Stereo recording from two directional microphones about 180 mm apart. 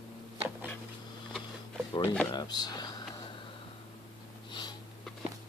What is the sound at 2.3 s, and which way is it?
Speech, 25° left (ahead or behind).